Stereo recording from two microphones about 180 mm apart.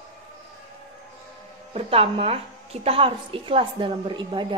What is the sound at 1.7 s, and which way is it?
A woman's voice, 30° right (ahead or behind).